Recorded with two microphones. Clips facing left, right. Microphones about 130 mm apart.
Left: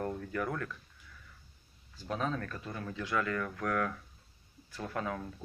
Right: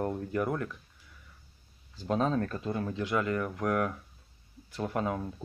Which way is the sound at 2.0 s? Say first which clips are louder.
Right 7 dB; 30° right (ahead or behind).